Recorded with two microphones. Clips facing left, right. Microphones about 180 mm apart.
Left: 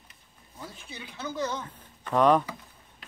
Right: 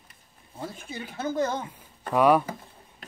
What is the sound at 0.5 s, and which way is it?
Speech, 50° right (ahead or behind).